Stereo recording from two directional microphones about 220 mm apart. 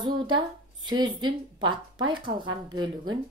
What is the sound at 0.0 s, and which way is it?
Speech, 20° right (ahead or behind).